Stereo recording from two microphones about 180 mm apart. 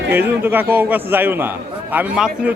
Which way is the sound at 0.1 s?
10° right (ahead or behind).